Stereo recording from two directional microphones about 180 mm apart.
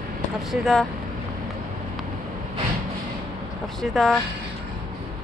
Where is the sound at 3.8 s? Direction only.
Centre (ahead or behind).